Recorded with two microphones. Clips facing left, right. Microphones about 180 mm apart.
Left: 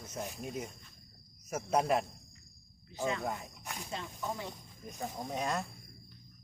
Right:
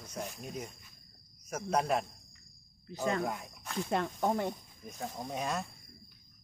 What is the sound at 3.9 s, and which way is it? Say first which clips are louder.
Speech: right 9 dB; 60° right (ahead or behind).